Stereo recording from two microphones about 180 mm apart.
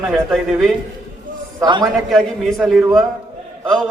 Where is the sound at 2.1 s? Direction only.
Centre (ahead or behind).